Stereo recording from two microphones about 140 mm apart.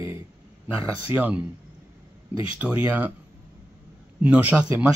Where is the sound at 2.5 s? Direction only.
10° right (ahead or behind).